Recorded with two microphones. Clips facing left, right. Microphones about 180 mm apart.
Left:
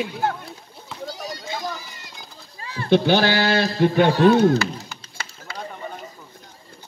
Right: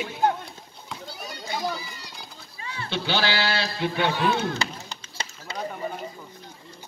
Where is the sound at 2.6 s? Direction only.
45° left (ahead or behind).